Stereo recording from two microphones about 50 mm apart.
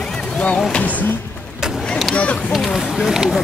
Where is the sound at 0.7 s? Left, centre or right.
Left.